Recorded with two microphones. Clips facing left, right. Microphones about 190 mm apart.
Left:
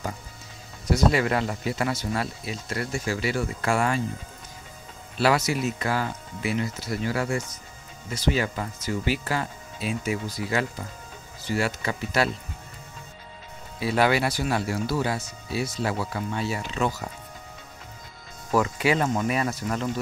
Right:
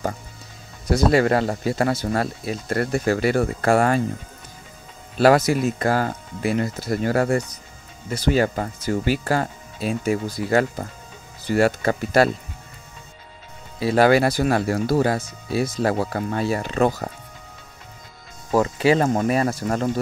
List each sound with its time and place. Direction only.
0.9 s speech: 40° right (ahead or behind)
5.1 s speech: 45° right (ahead or behind)
13.7 s speech: 40° right (ahead or behind)
18.5 s speech: 35° right (ahead or behind)